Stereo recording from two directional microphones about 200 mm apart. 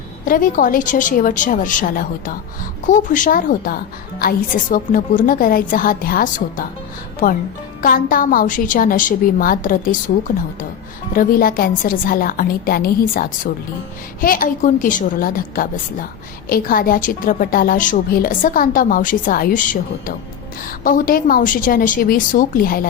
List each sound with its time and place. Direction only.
0.3 s a woman's voice: 45° left (ahead or behind)